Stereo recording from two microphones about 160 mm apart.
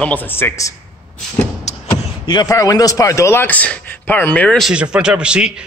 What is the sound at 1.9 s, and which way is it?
Speech, 25° left (ahead or behind).